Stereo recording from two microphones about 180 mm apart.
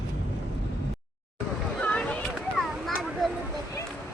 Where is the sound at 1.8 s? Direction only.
5° left (ahead or behind).